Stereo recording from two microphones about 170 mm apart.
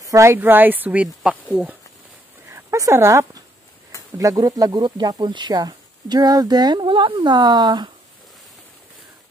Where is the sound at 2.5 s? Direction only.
15° right (ahead or behind).